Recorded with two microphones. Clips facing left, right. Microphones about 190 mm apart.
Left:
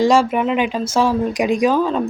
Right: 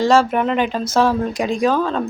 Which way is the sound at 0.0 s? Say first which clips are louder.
Even; 15° left (ahead or behind).